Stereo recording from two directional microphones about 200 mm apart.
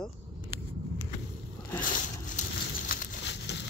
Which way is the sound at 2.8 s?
45° left (ahead or behind).